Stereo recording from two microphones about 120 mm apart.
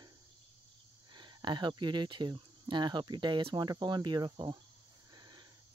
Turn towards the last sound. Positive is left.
turn(degrees=-35)  # may be behind; listen again after turning